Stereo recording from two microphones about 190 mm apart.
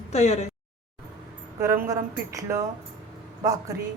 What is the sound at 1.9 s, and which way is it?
A woman's voice, 15° right (ahead or behind).